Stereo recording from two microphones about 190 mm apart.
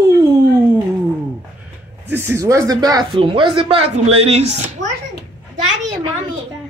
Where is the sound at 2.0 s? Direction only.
10° right (ahead or behind); by 4.6 s 35° right (ahead or behind).